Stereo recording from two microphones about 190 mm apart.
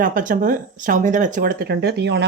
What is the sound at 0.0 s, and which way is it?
Speech, 45° right (ahead or behind).